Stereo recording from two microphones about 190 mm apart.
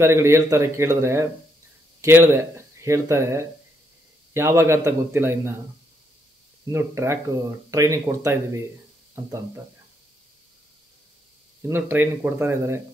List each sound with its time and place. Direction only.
0.0 s speech: 15° right (ahead or behind)
6.6 s speech: 15° right (ahead or behind)
11.6 s speech: 10° right (ahead or behind)